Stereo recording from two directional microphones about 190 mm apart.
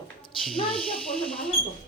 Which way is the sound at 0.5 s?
25° left (ahead or behind).